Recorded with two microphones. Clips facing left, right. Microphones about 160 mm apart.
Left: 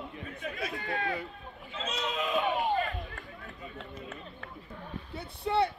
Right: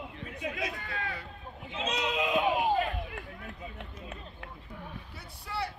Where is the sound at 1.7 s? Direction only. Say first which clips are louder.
Right 3 dB; 15° right (ahead or behind).